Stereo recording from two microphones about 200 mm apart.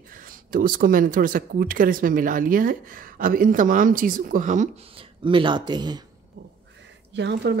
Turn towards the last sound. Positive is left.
turn(degrees=-60)  # may be behind; listen again after turning